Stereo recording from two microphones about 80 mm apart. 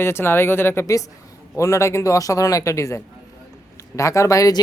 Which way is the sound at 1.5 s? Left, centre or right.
Left.